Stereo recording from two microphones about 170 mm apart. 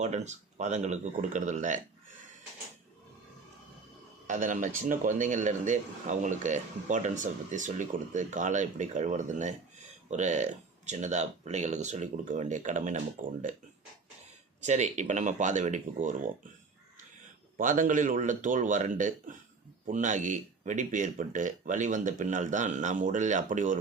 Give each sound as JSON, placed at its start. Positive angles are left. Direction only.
{"t": 0.0, "sound": "speech", "side_deg": -40}
{"t": 4.3, "sound": "speech", "side_deg": -50}
{"t": 14.6, "sound": "speech", "side_deg": -45}
{"t": 17.6, "sound": "speech", "side_deg": -50}